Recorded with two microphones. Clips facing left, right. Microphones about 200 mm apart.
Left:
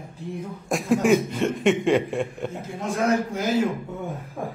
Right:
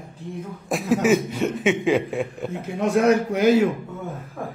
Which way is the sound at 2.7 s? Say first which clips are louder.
Right 5 dB; 65° right (ahead or behind).